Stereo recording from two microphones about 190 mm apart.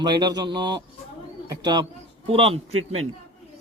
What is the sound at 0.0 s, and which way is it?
A man's voice, 20° right (ahead or behind).